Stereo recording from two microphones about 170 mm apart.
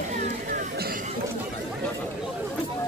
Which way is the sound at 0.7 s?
60° right (ahead or behind).